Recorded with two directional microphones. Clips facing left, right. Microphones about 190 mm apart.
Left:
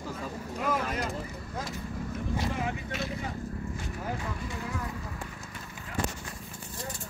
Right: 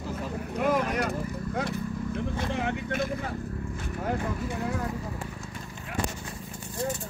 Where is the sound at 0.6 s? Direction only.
65° right (ahead or behind).